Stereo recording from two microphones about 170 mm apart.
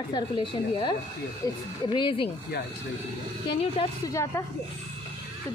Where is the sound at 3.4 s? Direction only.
30° left (ahead or behind).